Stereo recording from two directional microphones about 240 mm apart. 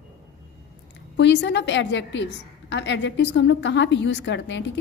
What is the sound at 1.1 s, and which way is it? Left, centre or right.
A woman's voice, left.